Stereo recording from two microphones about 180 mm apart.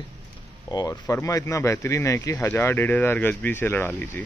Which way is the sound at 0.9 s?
10° left (ahead or behind).